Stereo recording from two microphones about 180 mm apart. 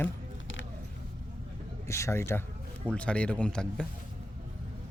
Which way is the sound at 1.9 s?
15° left (ahead or behind).